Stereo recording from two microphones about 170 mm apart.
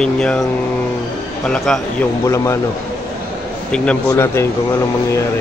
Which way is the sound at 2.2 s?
15° left (ahead or behind).